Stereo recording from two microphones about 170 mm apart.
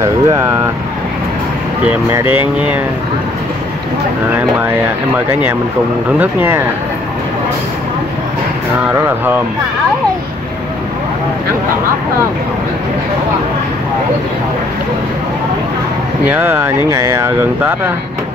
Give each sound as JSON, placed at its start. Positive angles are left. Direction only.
{"t": 0.0, "sound": "speech", "side_deg": -15}
{"t": 1.9, "sound": "speech", "side_deg": -10}
{"t": 5.1, "sound": "speech", "side_deg": -10}
{"t": 16.3, "sound": "speech", "side_deg": -10}